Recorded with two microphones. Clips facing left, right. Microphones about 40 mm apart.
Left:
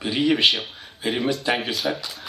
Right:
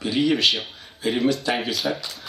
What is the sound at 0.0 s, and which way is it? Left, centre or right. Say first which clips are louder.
Speech: left 1 dB; centre.